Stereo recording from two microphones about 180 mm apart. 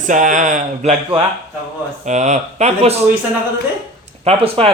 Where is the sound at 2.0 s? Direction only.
40° right (ahead or behind).